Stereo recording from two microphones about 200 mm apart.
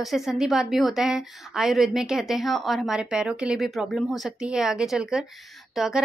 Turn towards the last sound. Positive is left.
turn(degrees=0)  # may be behind; listen again after turning